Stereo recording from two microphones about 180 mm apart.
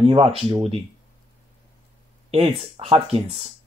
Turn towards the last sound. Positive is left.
turn(degrees=-30)  # may be behind; listen again after turning